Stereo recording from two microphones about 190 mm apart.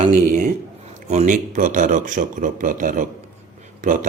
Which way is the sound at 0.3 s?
40° right (ahead or behind).